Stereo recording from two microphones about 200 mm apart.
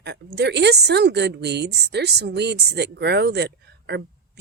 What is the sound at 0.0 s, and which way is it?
A woman's voice, 55° right (ahead or behind).